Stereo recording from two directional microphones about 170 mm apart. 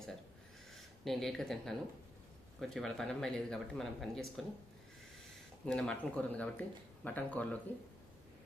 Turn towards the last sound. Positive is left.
turn(degrees=10)  # may be behind; listen again after turning